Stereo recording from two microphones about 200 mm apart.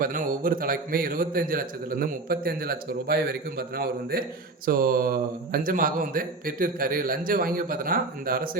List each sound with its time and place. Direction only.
0.0 s a man's voice: 45° right (ahead or behind)
4.6 s a man's voice: 45° right (ahead or behind)